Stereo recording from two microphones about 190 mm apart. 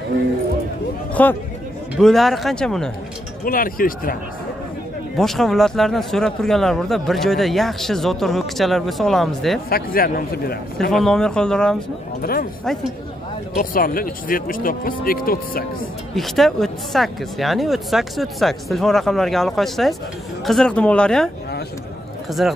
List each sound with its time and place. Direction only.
1.2 s speech: 10° left (ahead or behind)
3.4 s speech: 50° left (ahead or behind)
5.1 s speech: centre (ahead or behind)
9.7 s speech: 50° left (ahead or behind)
10.9 s speech: centre (ahead or behind)
12.2 s speech: 50° left (ahead or behind)
13.6 s speech: 50° left (ahead or behind)
16.2 s speech: centre (ahead or behind)
22.4 s speech: centre (ahead or behind)